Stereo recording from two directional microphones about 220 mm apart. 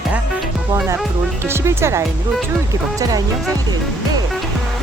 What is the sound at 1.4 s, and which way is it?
Speech, 10° right (ahead or behind).